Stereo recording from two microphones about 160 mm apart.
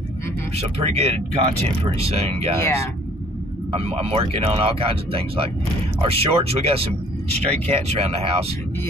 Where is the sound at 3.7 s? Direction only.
40° right (ahead or behind).